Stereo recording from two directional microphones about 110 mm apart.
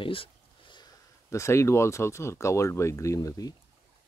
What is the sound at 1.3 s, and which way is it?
Speech, 25° left (ahead or behind).